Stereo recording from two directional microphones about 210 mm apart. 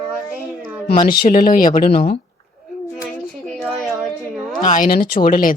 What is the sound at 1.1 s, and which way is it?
Speech, 40° left (ahead or behind).